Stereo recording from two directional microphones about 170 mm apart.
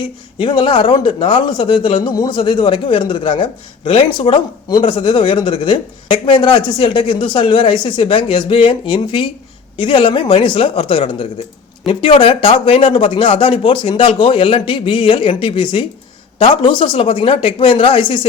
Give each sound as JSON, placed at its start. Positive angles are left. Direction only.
{"t": 0.3, "sound": "a man's voice", "side_deg": 30}